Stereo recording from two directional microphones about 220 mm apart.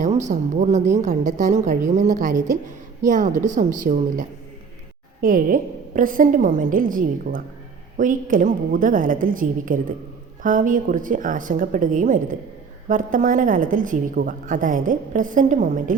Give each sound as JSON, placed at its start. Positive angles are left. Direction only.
{"t": 0.0, "sound": "a woman's voice", "side_deg": -35}